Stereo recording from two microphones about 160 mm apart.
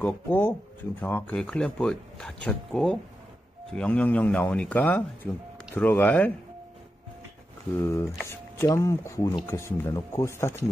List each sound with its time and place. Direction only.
0.0 s speech: 10° left (ahead or behind)
7.8 s speech: 15° left (ahead or behind)